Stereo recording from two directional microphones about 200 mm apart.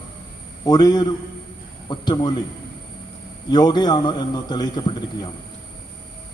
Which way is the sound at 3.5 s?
20° left (ahead or behind).